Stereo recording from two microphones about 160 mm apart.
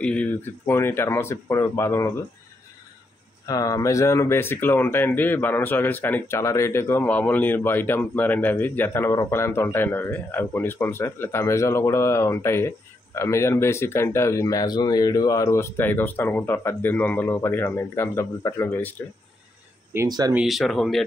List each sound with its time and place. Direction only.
0.0 s speech: 10° left (ahead or behind)
3.4 s speech: 20° left (ahead or behind)
19.9 s speech: 20° right (ahead or behind)
20.3 s speech: centre (ahead or behind)